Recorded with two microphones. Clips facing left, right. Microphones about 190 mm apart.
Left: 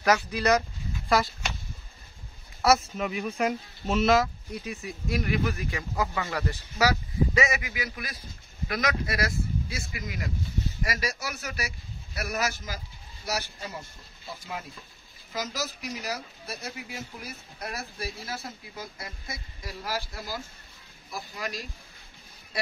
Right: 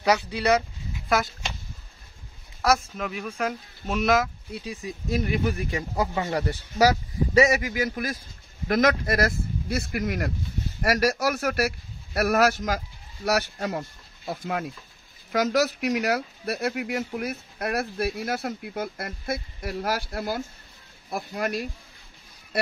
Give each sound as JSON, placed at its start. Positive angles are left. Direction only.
{"t": 0.0, "sound": "speech", "side_deg": -10}
{"t": 2.6, "sound": "speech", "side_deg": 5}
{"t": 4.8, "sound": "a man's voice", "side_deg": -30}